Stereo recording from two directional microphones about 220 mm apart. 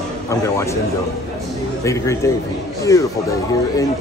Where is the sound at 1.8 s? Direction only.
15° left (ahead or behind).